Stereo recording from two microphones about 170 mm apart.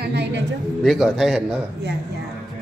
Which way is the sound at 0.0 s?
85° right.